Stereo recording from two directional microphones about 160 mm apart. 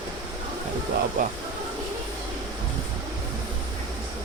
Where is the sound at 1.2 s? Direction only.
55° right (ahead or behind).